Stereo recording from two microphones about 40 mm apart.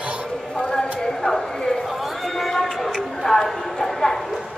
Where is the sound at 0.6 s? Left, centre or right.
Centre.